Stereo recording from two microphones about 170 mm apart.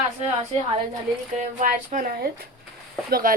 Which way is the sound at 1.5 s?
50° right (ahead or behind).